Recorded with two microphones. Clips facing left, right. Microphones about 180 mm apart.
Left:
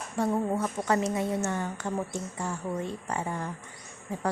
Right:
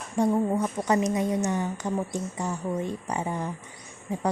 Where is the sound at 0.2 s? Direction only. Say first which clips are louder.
Right 4 dB; 15° right (ahead or behind).